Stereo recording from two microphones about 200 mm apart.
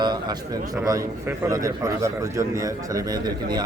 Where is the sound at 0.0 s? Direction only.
20° right (ahead or behind).